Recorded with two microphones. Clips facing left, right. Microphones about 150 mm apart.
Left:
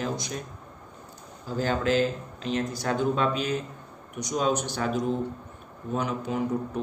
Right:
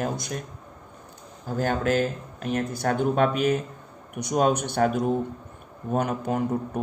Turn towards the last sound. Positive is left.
turn(degrees=-50)  # may be behind; listen again after turning